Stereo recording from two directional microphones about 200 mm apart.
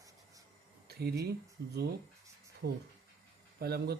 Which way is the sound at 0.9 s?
50° right (ahead or behind).